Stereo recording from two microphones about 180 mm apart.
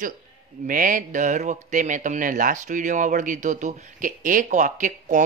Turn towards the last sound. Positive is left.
turn(degrees=-45)  # may be behind; listen again after turning